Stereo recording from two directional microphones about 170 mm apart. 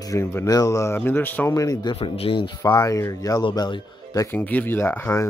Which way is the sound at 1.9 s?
35° left (ahead or behind).